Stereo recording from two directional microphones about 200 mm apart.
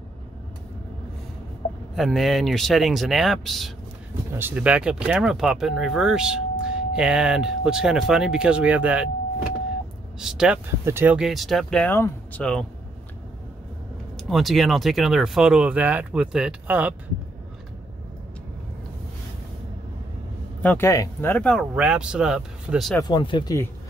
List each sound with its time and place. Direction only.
2.0 s speech: centre (ahead or behind)
4.3 s speech: 10° right (ahead or behind)
10.1 s speech: 5° right (ahead or behind)
14.1 s speech: centre (ahead or behind)
20.6 s speech: 10° left (ahead or behind)
22.9 s speech: 20° left (ahead or behind)